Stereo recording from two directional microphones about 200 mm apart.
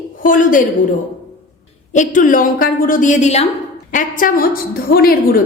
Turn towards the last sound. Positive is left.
turn(degrees=50)  # may be behind; listen again after turning